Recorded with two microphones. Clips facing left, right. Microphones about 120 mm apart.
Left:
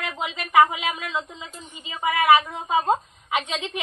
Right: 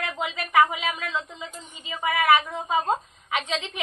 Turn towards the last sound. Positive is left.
turn(degrees=15)  # may be behind; listen again after turning